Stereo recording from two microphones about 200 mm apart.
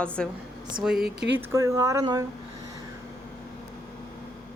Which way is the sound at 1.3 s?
10° right (ahead or behind).